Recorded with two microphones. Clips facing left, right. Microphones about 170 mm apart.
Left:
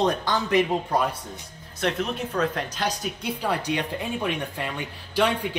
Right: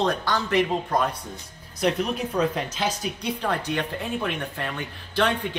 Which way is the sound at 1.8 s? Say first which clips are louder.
Right 2 dB; 5° right (ahead or behind).